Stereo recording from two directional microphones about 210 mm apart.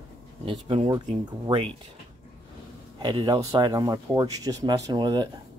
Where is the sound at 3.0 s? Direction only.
20° right (ahead or behind).